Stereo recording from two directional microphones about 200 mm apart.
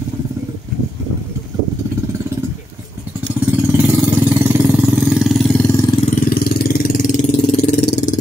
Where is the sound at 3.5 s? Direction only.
10° right (ahead or behind); by 5.8 s 10° left (ahead or behind).